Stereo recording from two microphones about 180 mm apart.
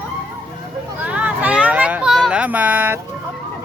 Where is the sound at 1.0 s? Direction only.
10° right (ahead or behind).